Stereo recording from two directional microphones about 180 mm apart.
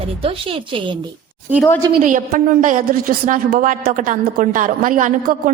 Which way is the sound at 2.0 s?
45° right (ahead or behind).